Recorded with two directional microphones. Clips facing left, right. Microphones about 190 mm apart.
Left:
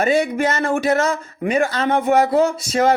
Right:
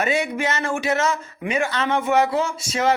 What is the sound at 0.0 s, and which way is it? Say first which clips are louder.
A man's voice: left 5 dB; 40° left (ahead or behind).